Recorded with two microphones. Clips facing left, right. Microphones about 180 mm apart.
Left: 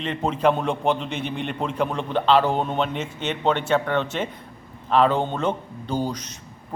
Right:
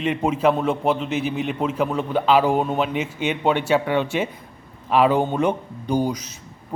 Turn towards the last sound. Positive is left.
turn(degrees=-10)  # may be behind; listen again after turning